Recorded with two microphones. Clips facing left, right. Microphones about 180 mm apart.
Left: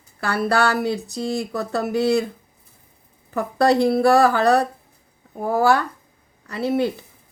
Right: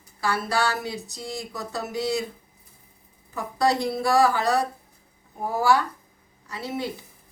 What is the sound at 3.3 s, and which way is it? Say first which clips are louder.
A woman's voice: left 6 dB; 60° left (ahead or behind).